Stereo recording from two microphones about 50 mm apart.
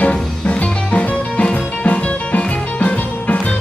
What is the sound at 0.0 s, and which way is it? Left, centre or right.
Music, left.